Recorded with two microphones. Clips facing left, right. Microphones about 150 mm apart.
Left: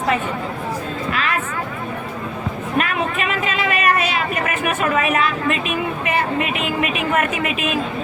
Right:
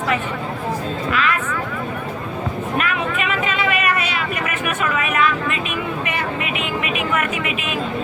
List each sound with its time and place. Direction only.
1.1 s vehicle: 40° left (ahead or behind)
2.7 s a sound: 35° left (ahead or behind)
7.1 s speech: 35° left (ahead or behind)